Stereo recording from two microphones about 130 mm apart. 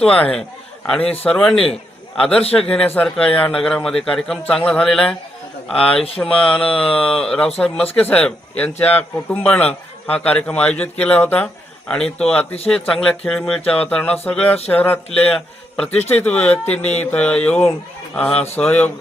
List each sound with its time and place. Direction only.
0.0 s a man's voice: 10° left (ahead or behind)
15.9 s speech: 55° left (ahead or behind)
16.2 s speech: 10° left (ahead or behind)